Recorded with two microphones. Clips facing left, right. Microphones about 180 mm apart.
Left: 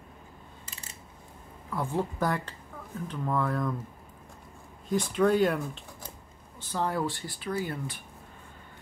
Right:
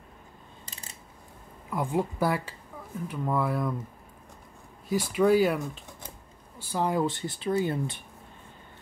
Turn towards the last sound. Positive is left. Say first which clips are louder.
# right 5 dB
turn(degrees=-25)  # may be behind; listen again after turning